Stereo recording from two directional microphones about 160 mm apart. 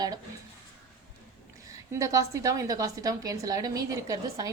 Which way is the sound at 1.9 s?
20° right (ahead or behind).